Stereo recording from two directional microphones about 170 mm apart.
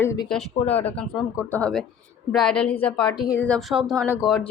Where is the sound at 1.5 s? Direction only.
5° left (ahead or behind).